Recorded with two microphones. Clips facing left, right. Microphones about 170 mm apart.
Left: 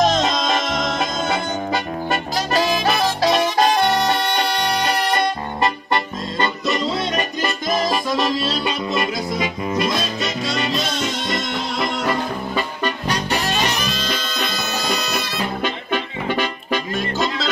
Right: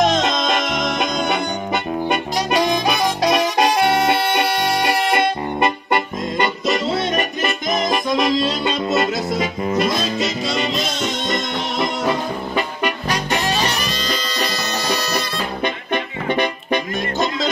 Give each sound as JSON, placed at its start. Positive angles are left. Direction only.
{"t": 0.7, "sound": "music", "side_deg": -20}
{"t": 5.2, "sound": "music", "side_deg": -20}
{"t": 11.8, "sound": "music", "side_deg": 0}
{"t": 12.5, "sound": "music", "side_deg": -15}